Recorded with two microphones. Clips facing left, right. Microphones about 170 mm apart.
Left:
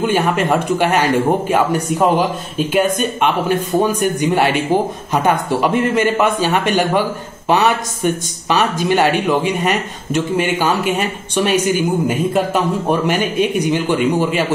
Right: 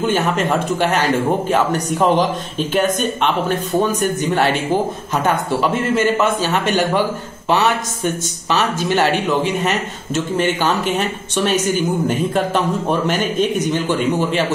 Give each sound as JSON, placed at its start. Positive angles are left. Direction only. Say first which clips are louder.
{"t": 0.1, "sound": "speech", "louder": "left 2 dB", "side_deg": 10}